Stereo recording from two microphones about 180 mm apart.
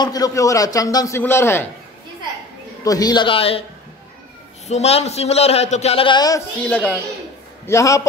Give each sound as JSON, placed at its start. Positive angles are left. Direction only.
{"t": 0.0, "sound": "a man's voice", "side_deg": 20}
{"t": 2.8, "sound": "a man's voice", "side_deg": 20}
{"t": 4.6, "sound": "a man's voice", "side_deg": 35}
{"t": 6.7, "sound": "a man's voice", "side_deg": 10}